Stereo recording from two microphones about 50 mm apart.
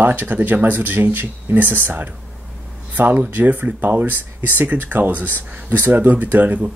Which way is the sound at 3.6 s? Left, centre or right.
Right.